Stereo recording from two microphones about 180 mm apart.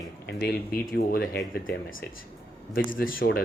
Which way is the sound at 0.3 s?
60° left (ahead or behind).